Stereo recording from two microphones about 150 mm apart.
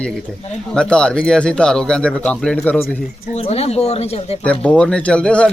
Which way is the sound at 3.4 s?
45° left (ahead or behind).